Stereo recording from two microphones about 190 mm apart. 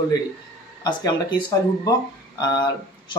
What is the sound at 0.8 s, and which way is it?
Speech, 20° left (ahead or behind).